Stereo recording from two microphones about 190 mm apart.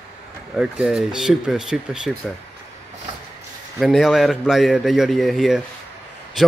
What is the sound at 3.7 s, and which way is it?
Speech, centre (ahead or behind).